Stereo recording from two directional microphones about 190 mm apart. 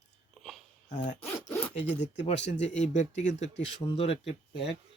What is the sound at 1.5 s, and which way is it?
Zipper, 10° left (ahead or behind).